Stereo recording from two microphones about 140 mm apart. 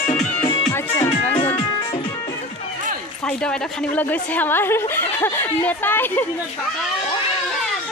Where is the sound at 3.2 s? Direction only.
5° left (ahead or behind).